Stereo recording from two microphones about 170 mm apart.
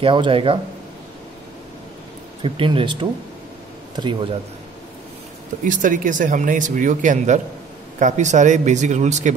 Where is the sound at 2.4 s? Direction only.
30° right (ahead or behind).